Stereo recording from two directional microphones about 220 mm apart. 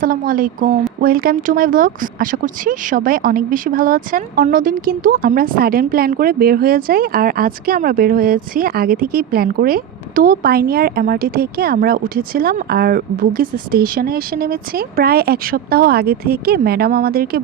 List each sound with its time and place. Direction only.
0.0 s speech: 40° right (ahead or behind)